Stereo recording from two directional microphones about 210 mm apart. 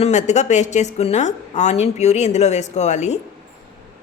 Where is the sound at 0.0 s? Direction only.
35° left (ahead or behind).